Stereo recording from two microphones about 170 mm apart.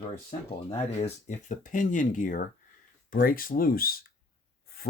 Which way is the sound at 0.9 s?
40° left (ahead or behind).